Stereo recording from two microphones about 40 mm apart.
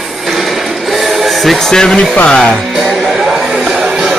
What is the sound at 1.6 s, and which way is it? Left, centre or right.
Speech, centre.